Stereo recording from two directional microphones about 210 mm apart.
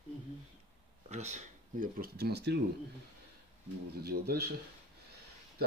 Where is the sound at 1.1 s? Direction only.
35° right (ahead or behind); by 2.5 s 50° right (ahead or behind).